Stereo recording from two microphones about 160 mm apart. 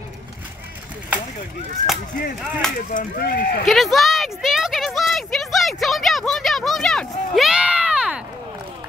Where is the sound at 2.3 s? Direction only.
Centre (ahead or behind).